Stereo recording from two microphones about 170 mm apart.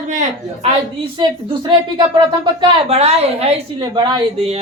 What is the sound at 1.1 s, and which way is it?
Speech, 30° right (ahead or behind).